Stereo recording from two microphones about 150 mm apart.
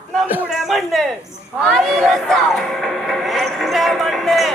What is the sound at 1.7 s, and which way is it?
Music, centre (ahead or behind).